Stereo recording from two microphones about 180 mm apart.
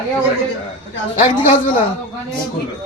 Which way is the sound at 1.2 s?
35° left (ahead or behind).